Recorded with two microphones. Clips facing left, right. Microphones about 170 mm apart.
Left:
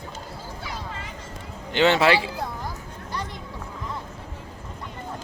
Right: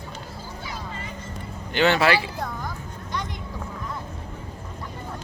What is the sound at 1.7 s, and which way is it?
Speech, 25° left (ahead or behind).